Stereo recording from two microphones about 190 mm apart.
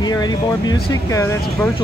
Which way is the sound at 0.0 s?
20° left (ahead or behind).